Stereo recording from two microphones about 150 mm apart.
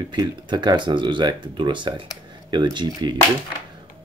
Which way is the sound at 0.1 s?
30° right (ahead or behind).